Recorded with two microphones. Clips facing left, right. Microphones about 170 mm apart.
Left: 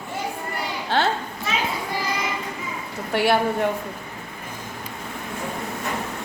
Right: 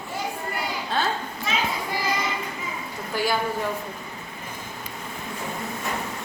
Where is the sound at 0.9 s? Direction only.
80° left.